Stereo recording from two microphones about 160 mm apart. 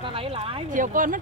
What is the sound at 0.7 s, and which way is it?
Speech, 55° right (ahead or behind).